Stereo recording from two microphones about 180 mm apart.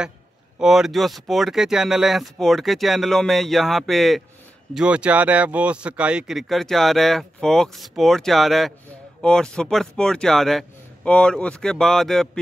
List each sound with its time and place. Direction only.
0.6 s speech: centre (ahead or behind)